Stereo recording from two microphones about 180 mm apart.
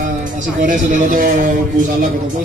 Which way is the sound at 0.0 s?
45° right (ahead or behind).